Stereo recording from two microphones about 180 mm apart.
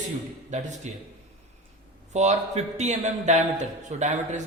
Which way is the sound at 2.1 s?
40° right (ahead or behind).